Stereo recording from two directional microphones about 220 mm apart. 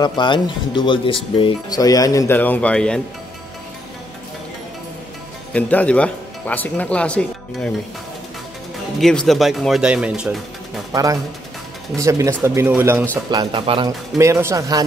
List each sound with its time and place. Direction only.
0.0 s speech: 20° left (ahead or behind); by 3.0 s 5° left (ahead or behind)
5.5 s speech: 5° left (ahead or behind)
9.0 s speech: centre (ahead or behind)
10.9 s speech: 15° right (ahead or behind)